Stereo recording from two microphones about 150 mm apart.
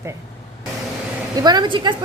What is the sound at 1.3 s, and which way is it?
Speech, 25° right (ahead or behind).